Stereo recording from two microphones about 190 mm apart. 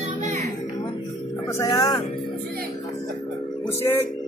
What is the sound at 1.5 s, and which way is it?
Speech, 15° left (ahead or behind).